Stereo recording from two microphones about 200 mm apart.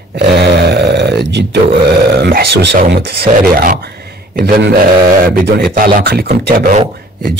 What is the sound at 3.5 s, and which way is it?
Speech, 45° right (ahead or behind).